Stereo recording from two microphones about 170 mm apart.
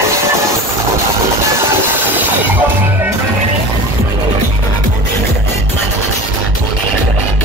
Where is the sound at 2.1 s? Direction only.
10° right (ahead or behind).